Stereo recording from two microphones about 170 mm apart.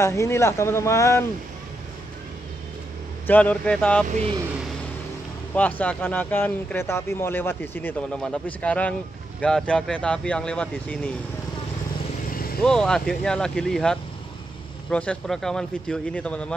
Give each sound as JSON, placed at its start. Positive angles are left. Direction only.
{"t": 0.0, "sound": "speech", "side_deg": 15}
{"t": 3.3, "sound": "speech", "side_deg": 10}
{"t": 4.1, "sound": "speech", "side_deg": -35}
{"t": 5.5, "sound": "speech", "side_deg": 10}
{"t": 12.3, "sound": "vehicle", "side_deg": 60}
{"t": 12.6, "sound": "speech", "side_deg": 5}